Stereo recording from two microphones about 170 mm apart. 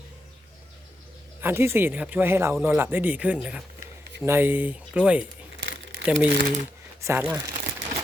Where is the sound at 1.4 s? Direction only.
15° right (ahead or behind).